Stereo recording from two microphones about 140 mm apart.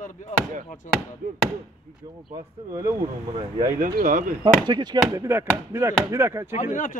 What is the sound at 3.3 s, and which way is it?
Speech, 40° right (ahead or behind).